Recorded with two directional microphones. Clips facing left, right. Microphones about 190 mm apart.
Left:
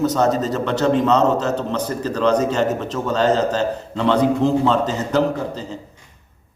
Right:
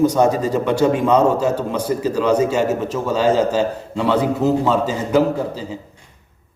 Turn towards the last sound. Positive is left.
turn(degrees=-10)  # may be behind; listen again after turning